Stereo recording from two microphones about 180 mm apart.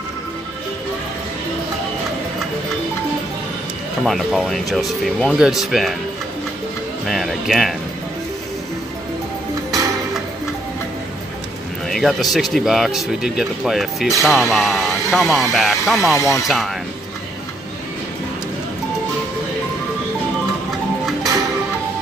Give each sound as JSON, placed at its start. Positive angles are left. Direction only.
{"t": 4.0, "sound": "speech", "side_deg": 0}
{"t": 7.1, "sound": "speech", "side_deg": 0}
{"t": 11.9, "sound": "speech", "side_deg": 0}
{"t": 16.2, "sound": "speech", "side_deg": 15}
{"t": 16.4, "sound": "speech", "side_deg": 0}